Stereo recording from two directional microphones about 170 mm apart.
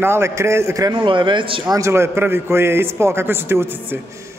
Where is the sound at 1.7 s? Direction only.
15° right (ahead or behind).